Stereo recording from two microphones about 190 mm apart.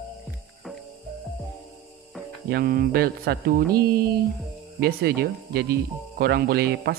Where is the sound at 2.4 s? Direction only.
55° right (ahead or behind).